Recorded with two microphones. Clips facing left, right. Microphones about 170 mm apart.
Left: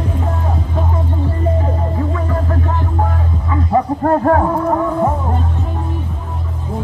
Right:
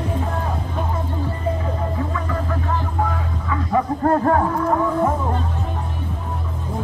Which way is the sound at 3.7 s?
40° left (ahead or behind).